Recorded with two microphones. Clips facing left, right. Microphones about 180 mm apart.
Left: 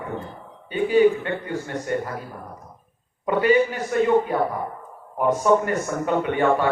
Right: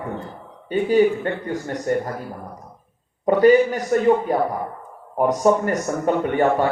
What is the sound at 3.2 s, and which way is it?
Speech, 40° right (ahead or behind).